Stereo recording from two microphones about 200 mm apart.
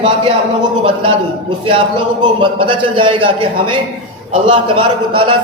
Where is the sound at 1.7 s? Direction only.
25° right (ahead or behind).